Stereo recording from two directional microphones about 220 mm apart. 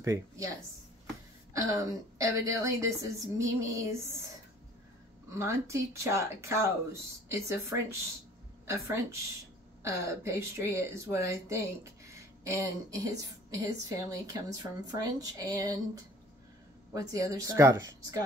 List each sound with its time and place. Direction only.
0.0 s speech: 15° right (ahead or behind)
1.5 s speech: 15° right (ahead or behind)
5.3 s speech: 10° right (ahead or behind)